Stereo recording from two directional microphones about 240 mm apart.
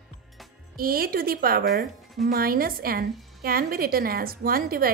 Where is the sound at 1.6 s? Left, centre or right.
Centre.